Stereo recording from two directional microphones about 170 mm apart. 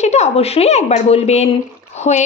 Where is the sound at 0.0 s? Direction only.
40° left (ahead or behind).